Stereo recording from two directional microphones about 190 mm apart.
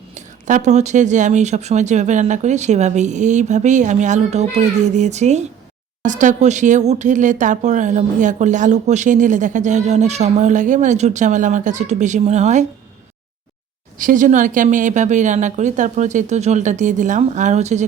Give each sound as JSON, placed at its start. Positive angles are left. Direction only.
{"t": 0.1, "sound": "speech", "side_deg": -40}
{"t": 14.0, "sound": "speech", "side_deg": -45}